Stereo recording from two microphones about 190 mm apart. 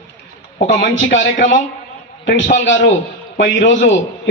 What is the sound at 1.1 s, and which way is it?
Speech, 45° left (ahead or behind).